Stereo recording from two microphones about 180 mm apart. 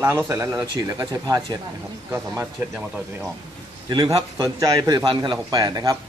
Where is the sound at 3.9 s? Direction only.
20° right (ahead or behind).